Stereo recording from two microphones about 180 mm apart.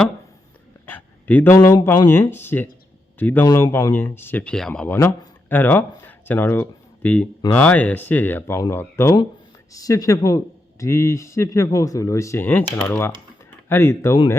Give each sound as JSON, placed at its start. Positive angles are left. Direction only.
{"t": 0.9, "sound": "speech", "side_deg": 10}